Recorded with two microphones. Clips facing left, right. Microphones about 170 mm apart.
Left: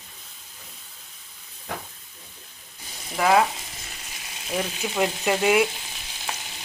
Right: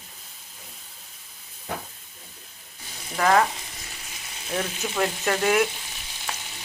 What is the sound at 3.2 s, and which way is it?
Frying, 10° left (ahead or behind).